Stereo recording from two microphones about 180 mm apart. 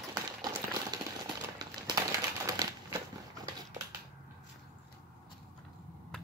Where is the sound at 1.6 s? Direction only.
25° right (ahead or behind).